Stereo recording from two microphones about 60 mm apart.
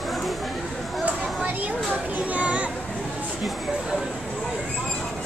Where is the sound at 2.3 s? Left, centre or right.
Right.